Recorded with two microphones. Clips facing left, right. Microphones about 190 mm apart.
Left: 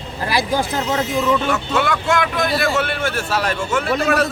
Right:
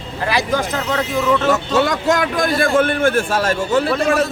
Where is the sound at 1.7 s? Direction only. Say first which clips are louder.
Right 3 dB; 35° right (ahead or behind).